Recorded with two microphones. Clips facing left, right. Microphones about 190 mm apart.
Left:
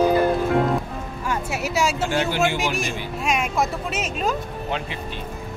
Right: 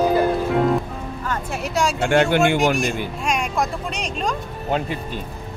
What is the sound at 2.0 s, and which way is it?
Speech, 60° right (ahead or behind).